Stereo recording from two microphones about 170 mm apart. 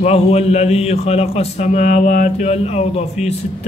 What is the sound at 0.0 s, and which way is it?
A man's voice, 40° left (ahead or behind).